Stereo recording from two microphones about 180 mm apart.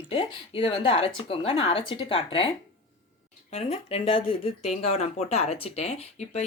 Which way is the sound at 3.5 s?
35° left (ahead or behind).